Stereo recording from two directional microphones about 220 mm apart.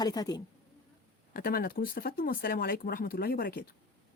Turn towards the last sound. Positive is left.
turn(degrees=45)  # may be behind; listen again after turning